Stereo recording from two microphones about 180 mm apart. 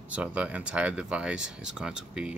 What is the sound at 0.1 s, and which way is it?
Speech, 5° right (ahead or behind).